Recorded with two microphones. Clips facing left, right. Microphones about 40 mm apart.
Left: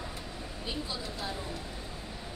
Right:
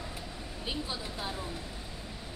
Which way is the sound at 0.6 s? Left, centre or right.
Centre.